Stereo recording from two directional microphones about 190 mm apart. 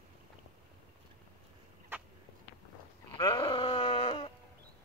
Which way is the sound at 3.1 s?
25° left (ahead or behind).